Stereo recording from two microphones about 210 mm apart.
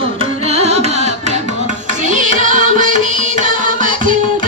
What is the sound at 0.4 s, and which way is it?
Carnatic music, 30° right (ahead or behind).